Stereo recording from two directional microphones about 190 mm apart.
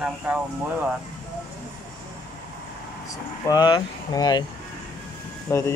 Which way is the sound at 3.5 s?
20° left (ahead or behind).